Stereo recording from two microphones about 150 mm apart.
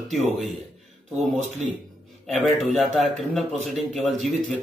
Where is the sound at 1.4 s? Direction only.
50° right (ahead or behind).